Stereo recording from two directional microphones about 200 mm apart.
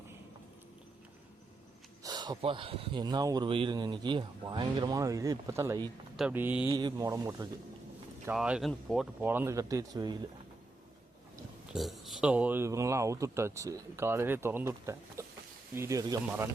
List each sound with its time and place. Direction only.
2.0 s speech: 20° right (ahead or behind)
6.7 s speech: 20° right (ahead or behind)
8.3 s speech: 5° right (ahead or behind)
11.7 s speech: centre (ahead or behind)
15.2 s a sound: 15° right (ahead or behind)
15.7 s speech: 15° right (ahead or behind)